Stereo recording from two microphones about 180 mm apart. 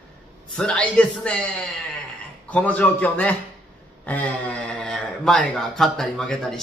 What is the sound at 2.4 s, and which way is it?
A man's voice, 10° left (ahead or behind).